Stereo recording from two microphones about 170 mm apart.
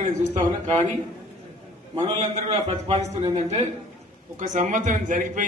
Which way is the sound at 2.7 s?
40° right (ahead or behind).